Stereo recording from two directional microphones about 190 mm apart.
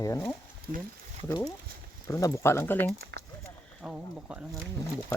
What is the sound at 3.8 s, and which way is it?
Speech, 5° right (ahead or behind).